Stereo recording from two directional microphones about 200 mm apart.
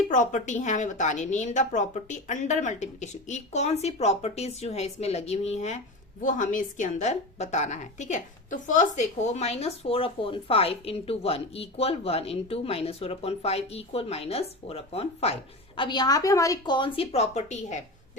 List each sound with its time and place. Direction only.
0.1 s a woman's voice: 40° left (ahead or behind)